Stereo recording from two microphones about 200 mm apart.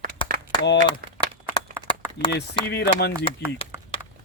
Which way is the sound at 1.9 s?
25° left (ahead or behind).